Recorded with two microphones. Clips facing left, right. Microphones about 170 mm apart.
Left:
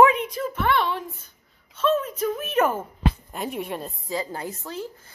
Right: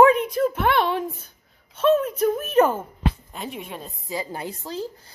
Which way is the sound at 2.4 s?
40° right (ahead or behind).